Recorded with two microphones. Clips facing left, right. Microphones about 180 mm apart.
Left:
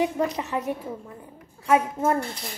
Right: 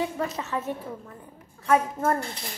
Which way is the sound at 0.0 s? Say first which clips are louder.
Left 4 dB; 15° left (ahead or behind).